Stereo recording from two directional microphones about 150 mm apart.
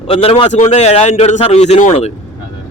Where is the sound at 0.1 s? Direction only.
40° left (ahead or behind).